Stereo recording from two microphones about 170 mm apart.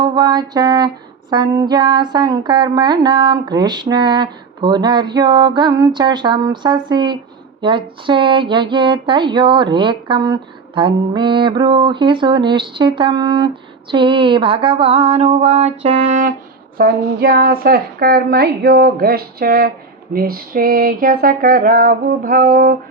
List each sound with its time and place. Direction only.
0.0 s speech: 25° right (ahead or behind); by 16.3 s 45° right (ahead or behind)
16.7 s a woman's voice: 60° right (ahead or behind)